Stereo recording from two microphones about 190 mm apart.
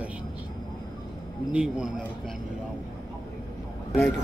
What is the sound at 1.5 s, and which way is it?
Speech, 5° right (ahead or behind).